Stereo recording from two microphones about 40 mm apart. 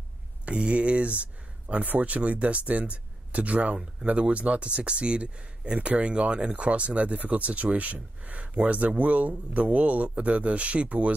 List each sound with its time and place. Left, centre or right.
0.5 s speech: right